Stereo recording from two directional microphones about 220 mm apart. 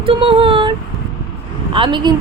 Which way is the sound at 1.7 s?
20° right (ahead or behind).